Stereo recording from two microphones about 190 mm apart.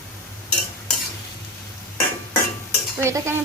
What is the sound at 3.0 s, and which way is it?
Speech, 15° right (ahead or behind).